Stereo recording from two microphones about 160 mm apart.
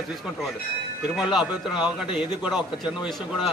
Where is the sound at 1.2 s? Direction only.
5° right (ahead or behind).